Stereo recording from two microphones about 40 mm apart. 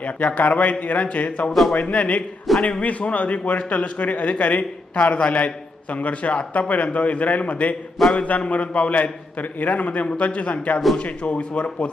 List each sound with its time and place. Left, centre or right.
0.0 s a man's voice: left
2.5 s a sound: centre
2.8 s a man's voice: left
8.3 s a man's voice: left